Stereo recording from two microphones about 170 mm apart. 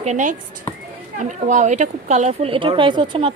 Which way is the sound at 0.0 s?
45° right (ahead or behind).